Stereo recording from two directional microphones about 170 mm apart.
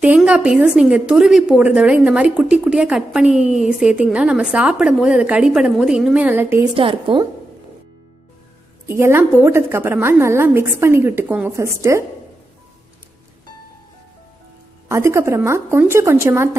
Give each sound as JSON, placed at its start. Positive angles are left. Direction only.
{"t": 0.0, "sound": "a woman's voice", "side_deg": -5}
{"t": 6.7, "sound": "a woman's voice", "side_deg": -30}
{"t": 8.8, "sound": "a woman's voice", "side_deg": -15}
{"t": 14.9, "sound": "a woman's voice", "side_deg": -15}